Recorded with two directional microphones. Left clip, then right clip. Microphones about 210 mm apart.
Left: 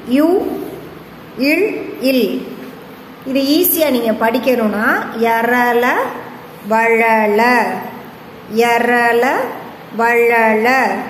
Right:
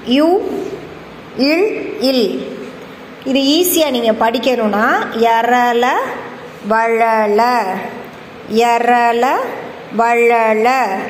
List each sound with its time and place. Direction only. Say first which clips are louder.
1.4 s a woman's voice: right 1 dB; 15° right (ahead or behind)